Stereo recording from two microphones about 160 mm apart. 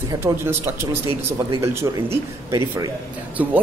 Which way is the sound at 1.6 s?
15° right (ahead or behind).